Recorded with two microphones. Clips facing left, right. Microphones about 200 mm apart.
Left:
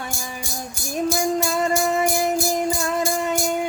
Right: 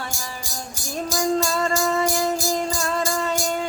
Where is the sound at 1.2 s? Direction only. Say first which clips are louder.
Even; 15° left (ahead or behind).